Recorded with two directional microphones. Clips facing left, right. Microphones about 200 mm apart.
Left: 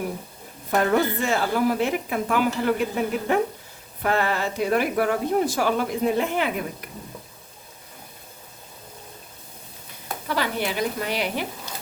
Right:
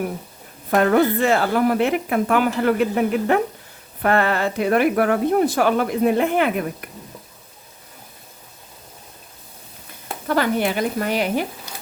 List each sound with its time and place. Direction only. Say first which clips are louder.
0.7 s a woman's voice: right 5 dB; 60° right (ahead or behind)
10.2 s speech: right 6 dB; 50° right (ahead or behind)
11.7 s a sound: left 1 dB; 15° right (ahead or behind)